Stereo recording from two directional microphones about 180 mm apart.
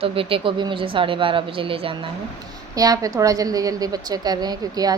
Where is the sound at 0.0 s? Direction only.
30° right (ahead or behind).